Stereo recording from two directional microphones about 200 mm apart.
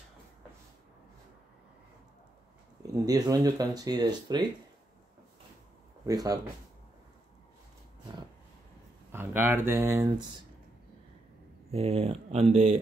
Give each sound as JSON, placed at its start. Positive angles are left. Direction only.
{"t": 2.8, "sound": "speech", "side_deg": -20}
{"t": 6.0, "sound": "speech", "side_deg": -15}
{"t": 9.1, "sound": "speech", "side_deg": -10}
{"t": 11.7, "sound": "speech", "side_deg": -30}